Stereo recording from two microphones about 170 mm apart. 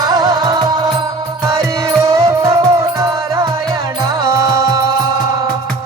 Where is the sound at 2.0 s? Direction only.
20° right (ahead or behind).